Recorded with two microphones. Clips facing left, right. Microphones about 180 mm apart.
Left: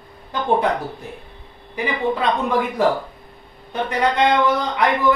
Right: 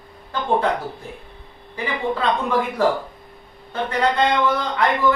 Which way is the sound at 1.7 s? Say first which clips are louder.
Left 2 dB; 15° left (ahead or behind).